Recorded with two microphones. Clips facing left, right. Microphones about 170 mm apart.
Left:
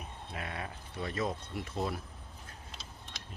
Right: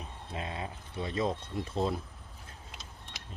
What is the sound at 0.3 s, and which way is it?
Speech, 25° right (ahead or behind).